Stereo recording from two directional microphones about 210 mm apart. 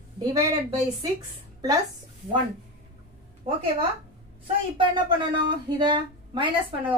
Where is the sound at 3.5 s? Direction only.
25° right (ahead or behind).